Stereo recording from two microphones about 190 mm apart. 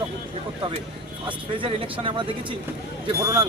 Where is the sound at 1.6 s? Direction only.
25° right (ahead or behind).